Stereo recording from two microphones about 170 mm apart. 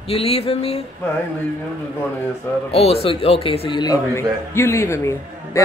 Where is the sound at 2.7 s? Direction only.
35° left (ahead or behind).